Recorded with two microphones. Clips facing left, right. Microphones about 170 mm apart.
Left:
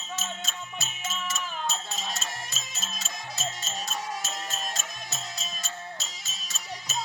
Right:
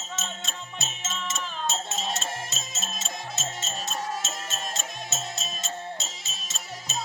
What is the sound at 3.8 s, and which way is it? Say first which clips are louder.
Music: right 2 dB; 25° right (ahead or behind).